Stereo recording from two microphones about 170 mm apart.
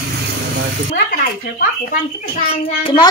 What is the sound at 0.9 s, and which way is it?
Speech, 60° left (ahead or behind).